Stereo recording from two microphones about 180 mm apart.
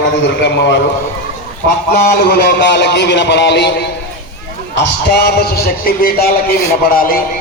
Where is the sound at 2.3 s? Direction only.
70° left (ahead or behind).